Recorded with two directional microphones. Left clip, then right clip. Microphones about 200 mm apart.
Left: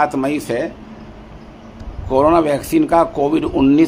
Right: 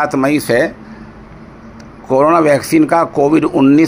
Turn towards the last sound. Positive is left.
turn(degrees=-15)  # may be behind; listen again after turning